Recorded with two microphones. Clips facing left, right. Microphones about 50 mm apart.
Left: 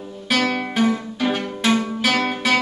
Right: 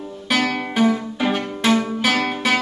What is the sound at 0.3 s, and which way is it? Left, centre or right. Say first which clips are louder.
Music: even; centre.